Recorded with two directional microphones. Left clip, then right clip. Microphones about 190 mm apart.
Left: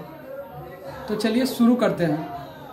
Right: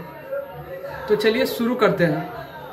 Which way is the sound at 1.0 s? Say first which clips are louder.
Right 5 dB; 15° left (ahead or behind).